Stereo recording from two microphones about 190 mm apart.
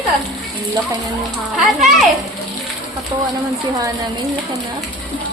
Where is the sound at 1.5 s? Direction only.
Centre (ahead or behind).